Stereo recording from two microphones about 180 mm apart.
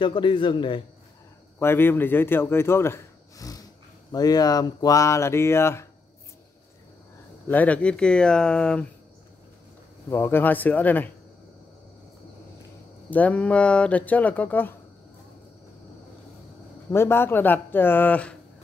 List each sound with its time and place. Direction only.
0.0 s a man's voice: 25° left (ahead or behind)
1.6 s speech: 10° left (ahead or behind)
7.4 s speech: 10° left (ahead or behind)
10.0 s speech: 15° left (ahead or behind)
13.1 s speech: 10° left (ahead or behind)
16.9 s speech: 15° left (ahead or behind)